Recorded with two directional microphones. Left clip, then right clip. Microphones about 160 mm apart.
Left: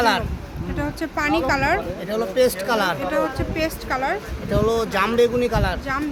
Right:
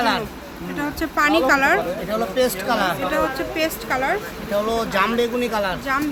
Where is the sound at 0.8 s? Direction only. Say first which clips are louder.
Right 4 dB; 5° right (ahead or behind).